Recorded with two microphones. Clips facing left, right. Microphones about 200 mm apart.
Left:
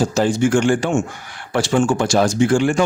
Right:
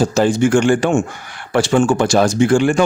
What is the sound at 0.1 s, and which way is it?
Speech, 65° right (ahead or behind).